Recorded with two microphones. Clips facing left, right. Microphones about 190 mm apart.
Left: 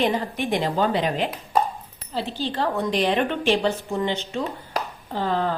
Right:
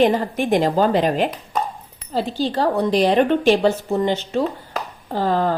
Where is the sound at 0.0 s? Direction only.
45° right (ahead or behind).